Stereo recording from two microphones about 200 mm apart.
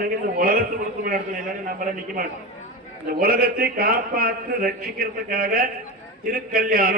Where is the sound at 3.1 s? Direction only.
50° right (ahead or behind).